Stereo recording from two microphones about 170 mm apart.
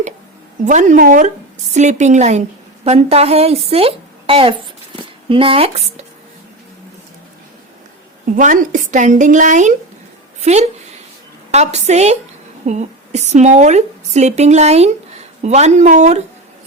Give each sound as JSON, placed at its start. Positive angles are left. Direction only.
{"t": 0.6, "sound": "a woman's voice", "side_deg": -45}
{"t": 8.4, "sound": "a woman's voice", "side_deg": -50}